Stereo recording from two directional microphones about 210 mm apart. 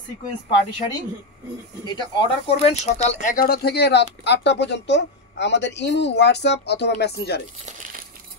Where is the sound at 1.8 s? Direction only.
25° left (ahead or behind); by 7.4 s 50° left (ahead or behind).